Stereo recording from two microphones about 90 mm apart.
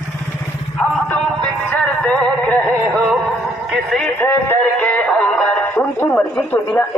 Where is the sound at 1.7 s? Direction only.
15° left (ahead or behind).